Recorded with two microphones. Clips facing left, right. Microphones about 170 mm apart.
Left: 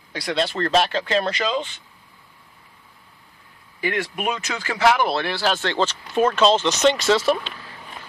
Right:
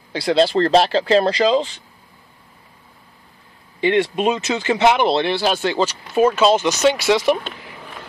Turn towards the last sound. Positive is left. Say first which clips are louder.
# right 3 dB
turn(degrees=-15)  # may be behind; listen again after turning